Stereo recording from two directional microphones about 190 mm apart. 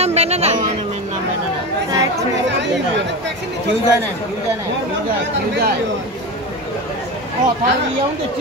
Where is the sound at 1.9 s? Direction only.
15° right (ahead or behind).